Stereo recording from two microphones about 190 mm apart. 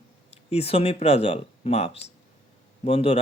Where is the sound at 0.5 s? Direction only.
30° left (ahead or behind).